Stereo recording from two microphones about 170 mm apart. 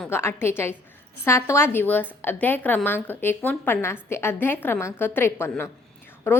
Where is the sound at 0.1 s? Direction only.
15° left (ahead or behind).